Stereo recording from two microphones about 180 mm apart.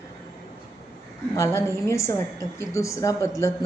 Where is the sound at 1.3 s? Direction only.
15° left (ahead or behind).